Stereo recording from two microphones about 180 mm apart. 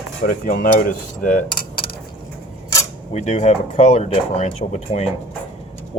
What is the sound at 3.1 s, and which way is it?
Speech, 40° left (ahead or behind).